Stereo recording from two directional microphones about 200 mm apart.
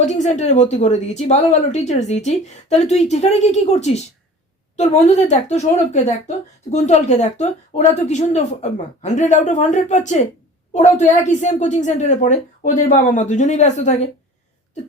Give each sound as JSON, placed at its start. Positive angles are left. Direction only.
{"t": 0.0, "sound": "speech", "side_deg": 35}